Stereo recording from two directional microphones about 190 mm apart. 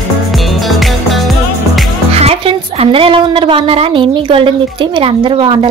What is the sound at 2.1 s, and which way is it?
A woman's voice, 30° right (ahead or behind).